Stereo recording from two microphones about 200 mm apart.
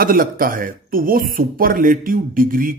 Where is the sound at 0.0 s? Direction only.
45° right (ahead or behind).